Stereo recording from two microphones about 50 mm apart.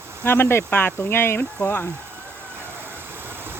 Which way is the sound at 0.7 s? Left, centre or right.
Left.